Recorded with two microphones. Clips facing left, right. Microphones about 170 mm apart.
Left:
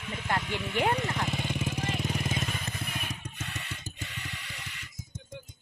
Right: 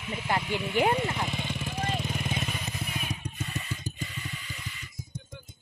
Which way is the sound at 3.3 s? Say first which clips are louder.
Right 4 dB; 75° left (ahead or behind).